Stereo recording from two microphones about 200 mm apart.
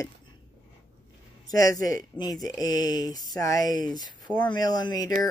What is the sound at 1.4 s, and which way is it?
Speech, 15° left (ahead or behind).